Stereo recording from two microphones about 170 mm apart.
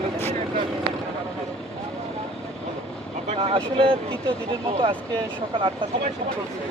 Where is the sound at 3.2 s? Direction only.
35° right (ahead or behind).